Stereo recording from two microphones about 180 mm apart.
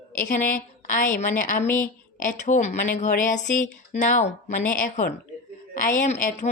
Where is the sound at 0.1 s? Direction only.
45° left (ahead or behind).